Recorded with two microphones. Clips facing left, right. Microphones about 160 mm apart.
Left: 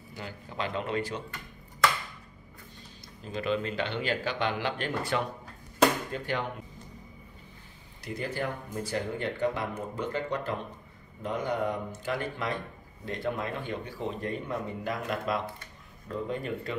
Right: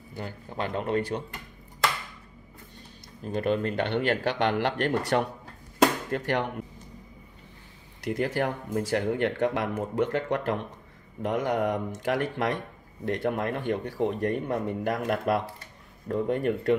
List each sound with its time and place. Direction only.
0.1 s speech: 50° right (ahead or behind)
3.3 s speech: 55° right (ahead or behind); by 6.4 s 75° right (ahead or behind)
8.0 s speech: 90° right; by 16.7 s 65° right (ahead or behind)